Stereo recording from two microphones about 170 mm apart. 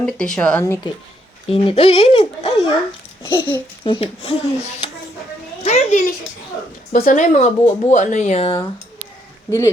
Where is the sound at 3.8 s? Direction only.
30° left (ahead or behind).